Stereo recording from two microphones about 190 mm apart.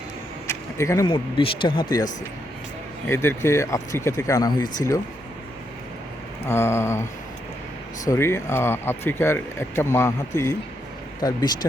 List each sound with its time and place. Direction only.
0.4 s a sound: 15° left (ahead or behind)
1.0 s speech: 25° left (ahead or behind)
3.1 s speech: 15° left (ahead or behind)
6.5 s speech: 15° left (ahead or behind)
8.0 s speech: 15° left (ahead or behind)